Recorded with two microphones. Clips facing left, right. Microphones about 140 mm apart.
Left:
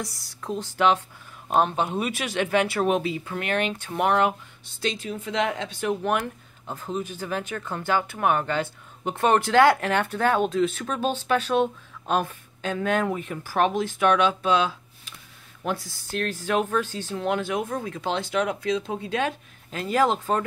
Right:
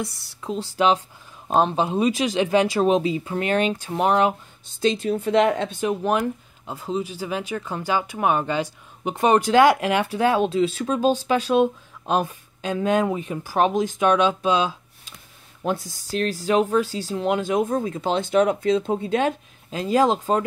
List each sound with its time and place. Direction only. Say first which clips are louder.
0.0 s speech: right 4 dB; centre (ahead or behind)
0.7 s speech: right 2 dB; 15° right (ahead or behind)
1.5 s speech: right 3 dB; 25° right (ahead or behind)
3.7 s a woman's voice: right 4 dB; 40° right (ahead or behind)
4.0 s speech: right 2 dB; 15° right (ahead or behind)
5.0 s a woman's voice: right 9 dB; 35° right (ahead or behind)
5.8 s speech: right 3 dB; 20° right (ahead or behind)